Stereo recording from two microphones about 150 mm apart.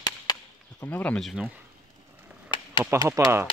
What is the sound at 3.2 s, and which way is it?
Speech, 20° right (ahead or behind).